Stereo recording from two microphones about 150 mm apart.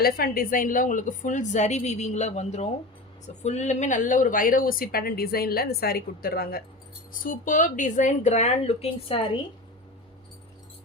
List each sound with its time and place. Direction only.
0.0 s a woman's voice: 80° left
7.1 s speech: 65° left (ahead or behind); by 9.4 s 40° left (ahead or behind)